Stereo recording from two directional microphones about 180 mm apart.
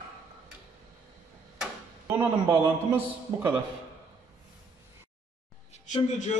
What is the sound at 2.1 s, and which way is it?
A man's voice, 10° right (ahead or behind).